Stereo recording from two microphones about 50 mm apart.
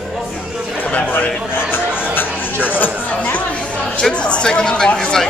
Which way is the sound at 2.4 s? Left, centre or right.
Left.